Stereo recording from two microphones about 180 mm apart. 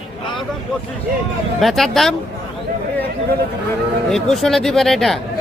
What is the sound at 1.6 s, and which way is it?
Speech, centre (ahead or behind).